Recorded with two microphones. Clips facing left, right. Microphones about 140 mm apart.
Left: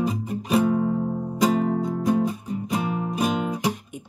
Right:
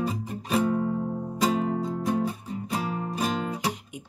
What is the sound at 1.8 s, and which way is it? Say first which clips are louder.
Music: left 4 dB; 15° left (ahead or behind).